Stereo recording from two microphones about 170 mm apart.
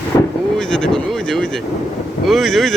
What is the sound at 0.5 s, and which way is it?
Speech, 5° left (ahead or behind).